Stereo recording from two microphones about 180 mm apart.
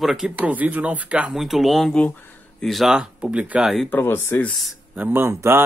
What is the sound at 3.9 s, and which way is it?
Speech, 10° left (ahead or behind).